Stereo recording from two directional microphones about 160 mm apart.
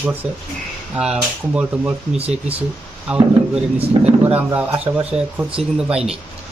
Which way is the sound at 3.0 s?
5° right (ahead or behind).